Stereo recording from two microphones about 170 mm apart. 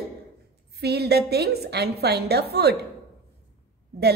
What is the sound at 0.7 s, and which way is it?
A woman's voice, 70° right (ahead or behind).